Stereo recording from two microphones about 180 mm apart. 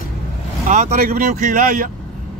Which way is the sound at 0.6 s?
45° right (ahead or behind).